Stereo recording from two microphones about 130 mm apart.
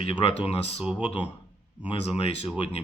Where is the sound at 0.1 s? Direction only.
45° left (ahead or behind).